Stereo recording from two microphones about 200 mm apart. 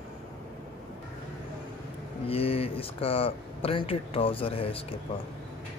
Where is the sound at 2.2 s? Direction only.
30° left (ahead or behind).